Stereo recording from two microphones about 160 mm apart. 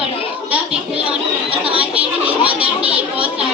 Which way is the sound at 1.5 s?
35° right (ahead or behind).